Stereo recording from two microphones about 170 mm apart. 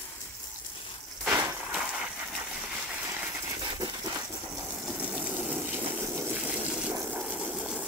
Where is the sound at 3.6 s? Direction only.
25° right (ahead or behind).